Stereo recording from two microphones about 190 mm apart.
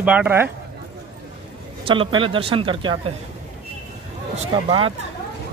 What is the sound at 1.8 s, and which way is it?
Speech, 25° right (ahead or behind).